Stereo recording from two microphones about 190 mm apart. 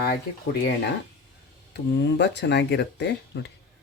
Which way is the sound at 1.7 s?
65° left (ahead or behind).